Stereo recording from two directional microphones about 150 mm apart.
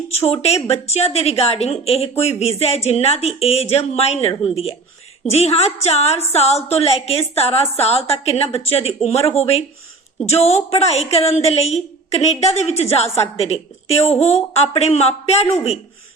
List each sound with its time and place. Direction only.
0.4 s a woman's voice: 45° left (ahead or behind)